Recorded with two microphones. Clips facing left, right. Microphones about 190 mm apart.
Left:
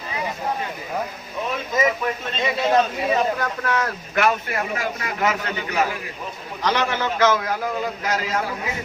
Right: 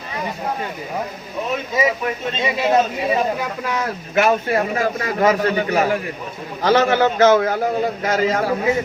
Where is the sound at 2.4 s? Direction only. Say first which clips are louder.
Right 2 dB; 15° right (ahead or behind).